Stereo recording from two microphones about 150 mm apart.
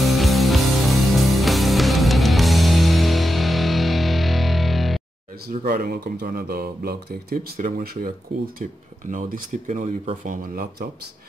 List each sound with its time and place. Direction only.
0.0 s music: centre (ahead or behind)
5.5 s speech: 70° right (ahead or behind)
9.1 s speech: 60° right (ahead or behind); by 10.9 s 75° right (ahead or behind)